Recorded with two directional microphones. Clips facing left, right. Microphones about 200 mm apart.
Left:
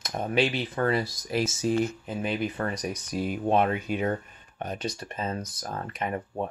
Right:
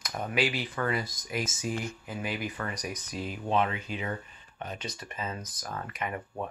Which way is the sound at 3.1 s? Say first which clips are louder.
Left 5 dB; 50° left (ahead or behind).